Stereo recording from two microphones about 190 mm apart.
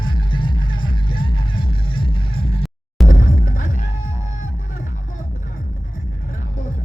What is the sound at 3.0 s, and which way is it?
Music, 45° left (ahead or behind).